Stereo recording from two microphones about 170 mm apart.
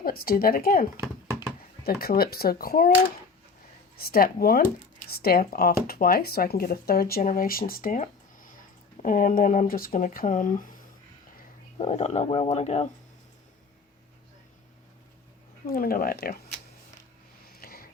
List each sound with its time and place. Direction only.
0.0 s speech: 60° left (ahead or behind)
3.9 s speech: 65° left (ahead or behind)
11.8 s speech: 40° left (ahead or behind)
15.6 s speech: 60° left (ahead or behind)
17.6 s a sound: 60° left (ahead or behind)